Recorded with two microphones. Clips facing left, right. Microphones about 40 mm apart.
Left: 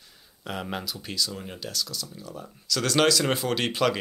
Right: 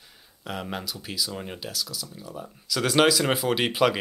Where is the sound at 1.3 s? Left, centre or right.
Centre.